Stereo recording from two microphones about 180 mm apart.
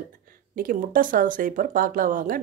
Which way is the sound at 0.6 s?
50° right (ahead or behind).